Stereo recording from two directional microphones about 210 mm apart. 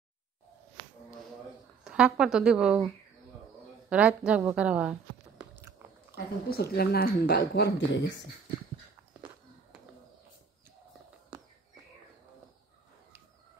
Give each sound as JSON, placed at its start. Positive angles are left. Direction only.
{"t": 1.9, "sound": "a woman's voice", "side_deg": -5}
{"t": 3.9, "sound": "a woman's voice", "side_deg": -5}
{"t": 5.4, "sound": "biting", "side_deg": -10}
{"t": 6.1, "sound": "speech", "side_deg": 50}